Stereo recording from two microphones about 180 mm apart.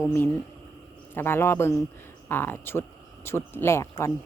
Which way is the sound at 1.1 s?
10° left (ahead or behind).